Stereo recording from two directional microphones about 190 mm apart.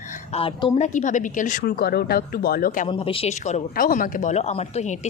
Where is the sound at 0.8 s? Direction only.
40° left (ahead or behind).